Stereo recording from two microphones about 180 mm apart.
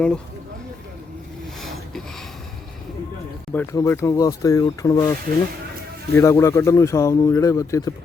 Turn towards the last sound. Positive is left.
turn(degrees=20)  # may be behind; listen again after turning